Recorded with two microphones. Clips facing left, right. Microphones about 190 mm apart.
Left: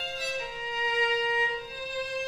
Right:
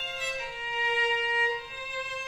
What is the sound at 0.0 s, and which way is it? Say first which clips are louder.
Violin: left 2 dB; 40° left (ahead or behind).